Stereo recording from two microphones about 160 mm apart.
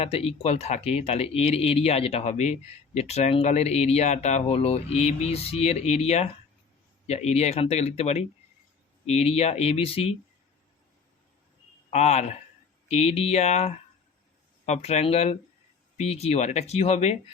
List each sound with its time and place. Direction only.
0.0 s speech: 40° left (ahead or behind)
11.9 s speech: 45° left (ahead or behind)